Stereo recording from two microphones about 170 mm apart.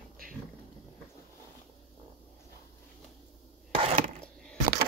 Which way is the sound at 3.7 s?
35° right (ahead or behind).